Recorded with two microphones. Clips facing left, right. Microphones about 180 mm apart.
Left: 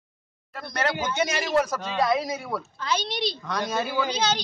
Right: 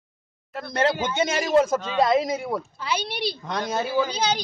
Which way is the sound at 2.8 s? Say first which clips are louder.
Even; 10° right (ahead or behind).